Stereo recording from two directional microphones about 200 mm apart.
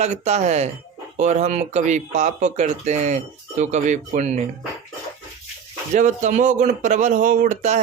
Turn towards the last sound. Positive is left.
turn(degrees=-35)  # may be behind; listen again after turning